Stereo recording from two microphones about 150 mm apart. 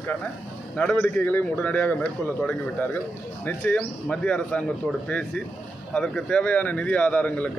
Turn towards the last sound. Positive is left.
turn(degrees=10)  # may be behind; listen again after turning